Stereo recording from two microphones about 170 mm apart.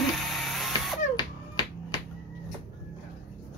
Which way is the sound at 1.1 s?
25° left (ahead or behind).